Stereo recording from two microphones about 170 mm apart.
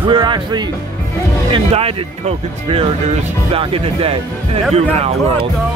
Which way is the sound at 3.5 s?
35° right (ahead or behind).